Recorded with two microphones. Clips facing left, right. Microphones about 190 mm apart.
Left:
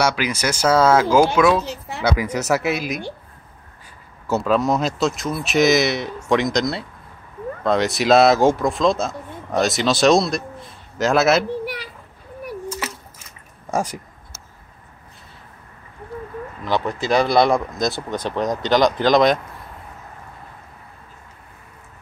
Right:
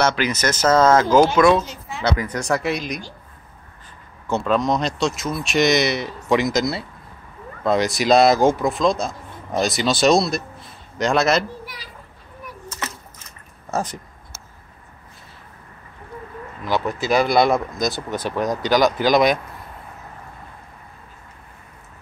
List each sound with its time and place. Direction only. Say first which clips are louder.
0.0 s speech: right 1 dB; 10° left (ahead or behind)
4.3 s speech: left 1 dB; 5° left (ahead or behind)
11.6 s children playing: left 10 dB; 65° left (ahead or behind)
13.7 s speech: left 2 dB; 10° left (ahead or behind)
17.1 s speech: left 1 dB; centre (ahead or behind)